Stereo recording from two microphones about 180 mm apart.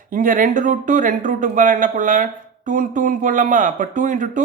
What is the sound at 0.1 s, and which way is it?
Speech, 50° right (ahead or behind).